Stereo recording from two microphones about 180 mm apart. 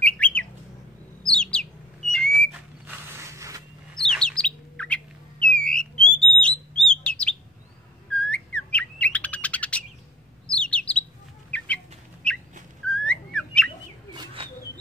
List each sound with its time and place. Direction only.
0.0 s bird: 5° left (ahead or behind)
2.9 s mechanisms: 15° right (ahead or behind)
4.0 s bird: 5° left (ahead or behind)
12.8 s whistling: 5° left (ahead or behind)
14.1 s bird: 25° right (ahead or behind)